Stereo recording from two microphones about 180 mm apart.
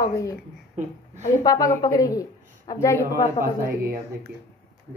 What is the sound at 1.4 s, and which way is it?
Speech, 20° left (ahead or behind).